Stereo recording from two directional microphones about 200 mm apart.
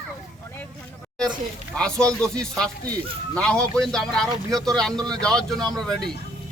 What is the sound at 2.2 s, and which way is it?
Speech, 5° left (ahead or behind).